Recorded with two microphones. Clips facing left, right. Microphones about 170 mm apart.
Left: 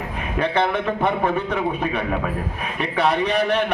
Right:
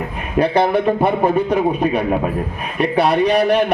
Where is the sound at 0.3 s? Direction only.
35° right (ahead or behind).